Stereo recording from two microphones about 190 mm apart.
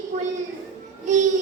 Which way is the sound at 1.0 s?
40° right (ahead or behind).